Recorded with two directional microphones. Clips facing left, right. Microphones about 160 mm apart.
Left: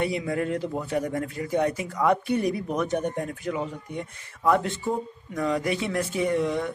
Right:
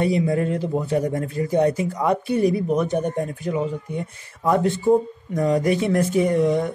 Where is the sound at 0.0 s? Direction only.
30° right (ahead or behind).